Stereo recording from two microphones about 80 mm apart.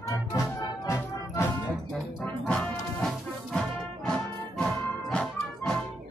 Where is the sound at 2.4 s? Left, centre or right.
Centre.